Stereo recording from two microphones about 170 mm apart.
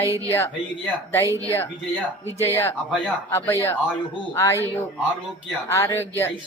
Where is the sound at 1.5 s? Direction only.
15° left (ahead or behind).